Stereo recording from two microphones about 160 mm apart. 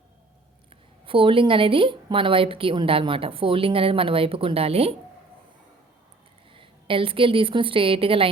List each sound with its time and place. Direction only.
1.0 s a woman's voice: 35° right (ahead or behind)
6.5 s a woman's voice: 35° right (ahead or behind)